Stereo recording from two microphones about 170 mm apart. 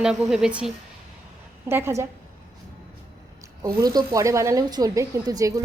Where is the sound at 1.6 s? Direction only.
15° right (ahead or behind).